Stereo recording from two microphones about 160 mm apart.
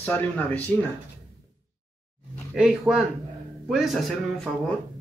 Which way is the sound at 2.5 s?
5° right (ahead or behind).